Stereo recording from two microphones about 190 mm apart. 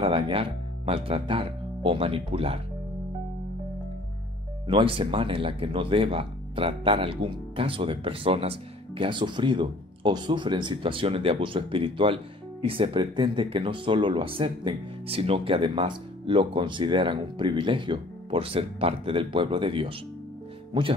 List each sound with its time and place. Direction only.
0.0 s speech: 30° right (ahead or behind)
4.6 s speech: 25° right (ahead or behind)